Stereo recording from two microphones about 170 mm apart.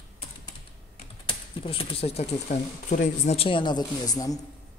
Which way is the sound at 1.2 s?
30° left (ahead or behind).